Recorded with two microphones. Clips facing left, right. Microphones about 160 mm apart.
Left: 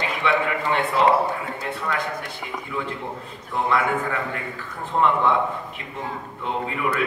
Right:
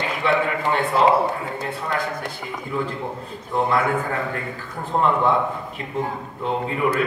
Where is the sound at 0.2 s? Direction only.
35° right (ahead or behind).